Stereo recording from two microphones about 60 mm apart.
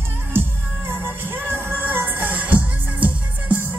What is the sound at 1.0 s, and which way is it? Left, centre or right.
Music, right.